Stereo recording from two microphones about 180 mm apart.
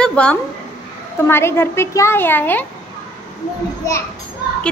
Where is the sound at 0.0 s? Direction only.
5° left (ahead or behind).